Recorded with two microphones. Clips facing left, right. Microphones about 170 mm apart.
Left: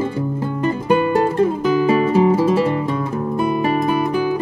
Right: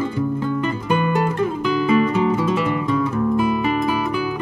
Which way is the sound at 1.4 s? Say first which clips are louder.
Left 4 dB; 35° left (ahead or behind).